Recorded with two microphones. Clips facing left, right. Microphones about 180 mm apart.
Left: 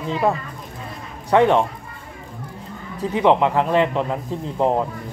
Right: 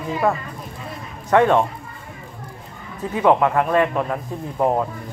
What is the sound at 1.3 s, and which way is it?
Speech, 20° left (ahead or behind).